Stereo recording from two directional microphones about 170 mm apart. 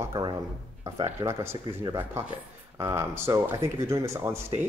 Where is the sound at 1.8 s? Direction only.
20° right (ahead or behind).